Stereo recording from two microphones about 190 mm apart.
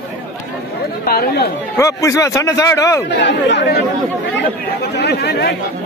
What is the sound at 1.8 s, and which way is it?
A man's voice, 15° left (ahead or behind).